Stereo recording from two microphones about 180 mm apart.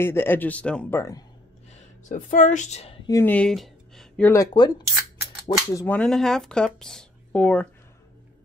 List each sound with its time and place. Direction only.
0.0 s speech: 15° left (ahead or behind)
1.7 s speech: 45° left (ahead or behind)
3.1 s a sound: 10° left (ahead or behind)
4.3 s speech: 20° left (ahead or behind)
5.9 s speech: 5° left (ahead or behind)